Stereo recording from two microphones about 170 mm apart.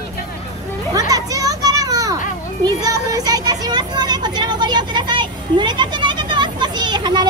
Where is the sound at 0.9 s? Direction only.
20° right (ahead or behind).